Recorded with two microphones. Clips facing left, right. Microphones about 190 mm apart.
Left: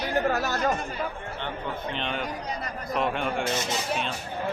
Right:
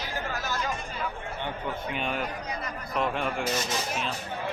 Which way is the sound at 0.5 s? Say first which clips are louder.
Left 6 dB; 50° left (ahead or behind).